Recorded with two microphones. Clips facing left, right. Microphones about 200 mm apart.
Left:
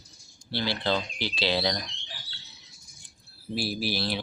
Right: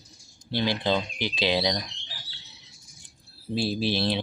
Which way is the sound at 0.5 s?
15° right (ahead or behind).